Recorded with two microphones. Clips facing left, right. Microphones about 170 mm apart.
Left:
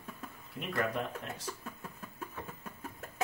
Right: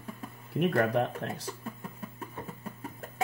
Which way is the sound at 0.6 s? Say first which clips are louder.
Right 8 dB; 65° right (ahead or behind).